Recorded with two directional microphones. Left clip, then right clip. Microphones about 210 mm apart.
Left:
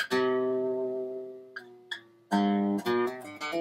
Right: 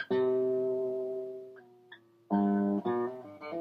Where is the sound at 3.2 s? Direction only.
15° left (ahead or behind).